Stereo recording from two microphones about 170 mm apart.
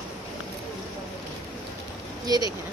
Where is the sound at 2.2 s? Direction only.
20° right (ahead or behind).